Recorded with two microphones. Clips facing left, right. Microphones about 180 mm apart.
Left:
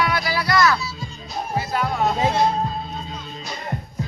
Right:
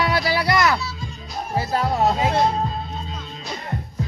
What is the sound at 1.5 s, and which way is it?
Music, 35° right (ahead or behind).